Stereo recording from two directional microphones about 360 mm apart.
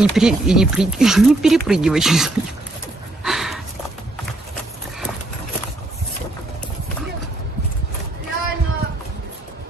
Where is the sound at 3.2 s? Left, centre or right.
Centre.